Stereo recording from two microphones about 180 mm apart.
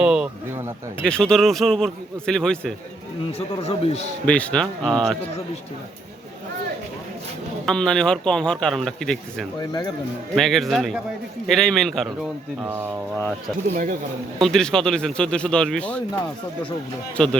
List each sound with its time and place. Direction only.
0.0 s a sound: 5° right (ahead or behind)
1.0 s speech: 5° left (ahead or behind)
3.3 s speech: 35° left (ahead or behind)
4.3 s speech: 5° left (ahead or behind)
7.6 s speech: 5° left (ahead or behind)
9.6 s speech: 20° left (ahead or behind)
10.3 s speech: centre (ahead or behind)
12.6 s speech: 10° right (ahead or behind)
14.3 s speech: centre (ahead or behind)
17.2 s speech: 5° left (ahead or behind)